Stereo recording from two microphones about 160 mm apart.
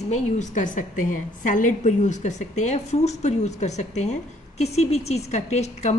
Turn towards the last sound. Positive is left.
turn(degrees=45)  # may be behind; listen again after turning